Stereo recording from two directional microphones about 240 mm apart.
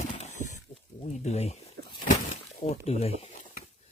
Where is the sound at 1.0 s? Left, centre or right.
Left.